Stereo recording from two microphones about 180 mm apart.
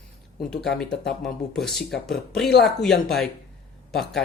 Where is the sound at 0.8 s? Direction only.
5° left (ahead or behind).